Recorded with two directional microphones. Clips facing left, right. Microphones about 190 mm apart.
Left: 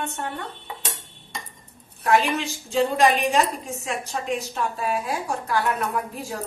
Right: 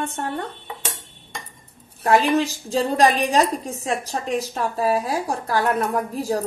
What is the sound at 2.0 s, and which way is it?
A woman's voice, 35° right (ahead or behind).